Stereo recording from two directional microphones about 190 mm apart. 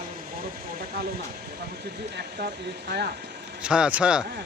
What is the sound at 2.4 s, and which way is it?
Speech, 60° right (ahead or behind).